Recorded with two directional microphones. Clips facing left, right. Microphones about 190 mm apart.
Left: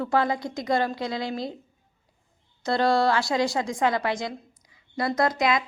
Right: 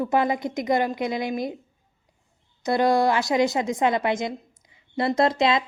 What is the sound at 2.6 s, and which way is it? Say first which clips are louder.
A woman's voice: right 2 dB; 15° right (ahead or behind).